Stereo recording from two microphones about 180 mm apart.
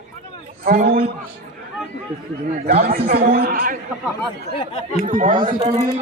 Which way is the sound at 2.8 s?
50° right (ahead or behind).